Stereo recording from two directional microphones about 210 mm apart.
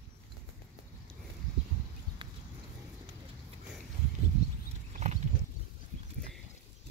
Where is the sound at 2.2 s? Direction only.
20° right (ahead or behind).